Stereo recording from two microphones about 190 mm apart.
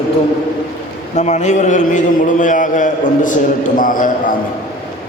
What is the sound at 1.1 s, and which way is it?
A man's voice, 40° left (ahead or behind).